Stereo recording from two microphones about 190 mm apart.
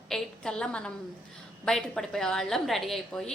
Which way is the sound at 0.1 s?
5° left (ahead or behind).